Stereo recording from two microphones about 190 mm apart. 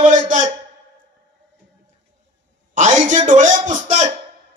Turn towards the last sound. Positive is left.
turn(degrees=-40)  # may be behind; listen again after turning